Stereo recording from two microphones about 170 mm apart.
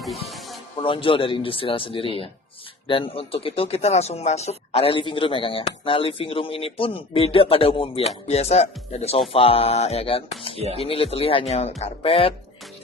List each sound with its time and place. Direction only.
0.0 s music: centre (ahead or behind)
0.8 s speech: 30° left (ahead or behind)